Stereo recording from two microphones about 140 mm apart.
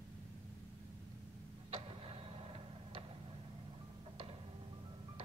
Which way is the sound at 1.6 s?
40° right (ahead or behind).